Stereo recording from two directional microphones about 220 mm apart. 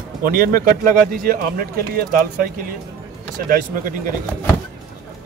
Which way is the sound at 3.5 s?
40° right (ahead or behind).